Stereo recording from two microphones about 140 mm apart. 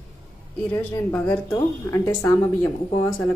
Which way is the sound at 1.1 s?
10° left (ahead or behind).